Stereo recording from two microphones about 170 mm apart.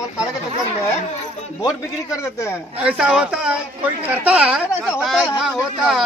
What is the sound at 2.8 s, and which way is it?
A woman's voice, 5° right (ahead or behind).